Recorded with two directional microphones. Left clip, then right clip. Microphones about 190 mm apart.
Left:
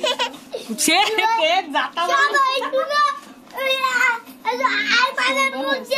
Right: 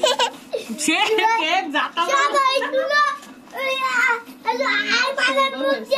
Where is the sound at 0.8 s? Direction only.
50° left (ahead or behind).